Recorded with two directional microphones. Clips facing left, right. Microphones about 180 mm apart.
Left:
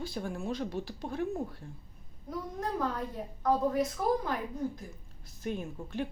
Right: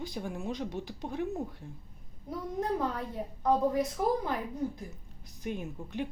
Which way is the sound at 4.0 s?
20° right (ahead or behind).